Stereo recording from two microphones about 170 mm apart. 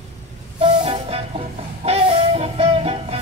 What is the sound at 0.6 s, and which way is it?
Music, 35° right (ahead or behind).